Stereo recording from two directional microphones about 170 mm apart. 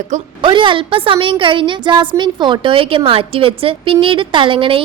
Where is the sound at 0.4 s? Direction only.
30° right (ahead or behind).